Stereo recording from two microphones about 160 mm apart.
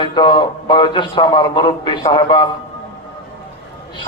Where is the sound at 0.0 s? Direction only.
30° left (ahead or behind).